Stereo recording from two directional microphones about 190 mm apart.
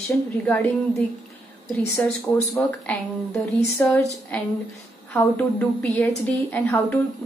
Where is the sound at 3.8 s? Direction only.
10° left (ahead or behind).